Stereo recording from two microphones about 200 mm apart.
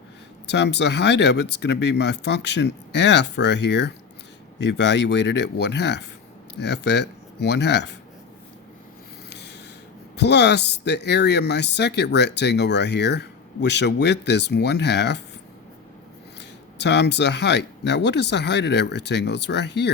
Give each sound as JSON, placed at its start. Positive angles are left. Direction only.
{"t": 0.4, "sound": "speech", "side_deg": 60}
{"t": 9.3, "sound": "snort", "side_deg": 60}
{"t": 10.2, "sound": "speech", "side_deg": 60}
{"t": 16.4, "sound": "speech", "side_deg": 60}